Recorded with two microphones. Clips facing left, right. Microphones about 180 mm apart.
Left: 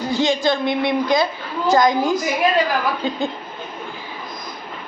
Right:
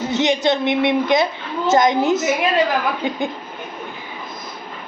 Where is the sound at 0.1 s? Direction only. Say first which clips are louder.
Right 1 dB; 20° right (ahead or behind).